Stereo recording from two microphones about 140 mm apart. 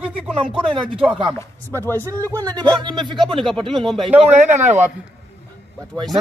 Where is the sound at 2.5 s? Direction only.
30° right (ahead or behind).